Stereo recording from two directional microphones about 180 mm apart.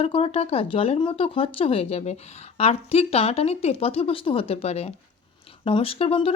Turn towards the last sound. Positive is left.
turn(degrees=30)  # may be behind; listen again after turning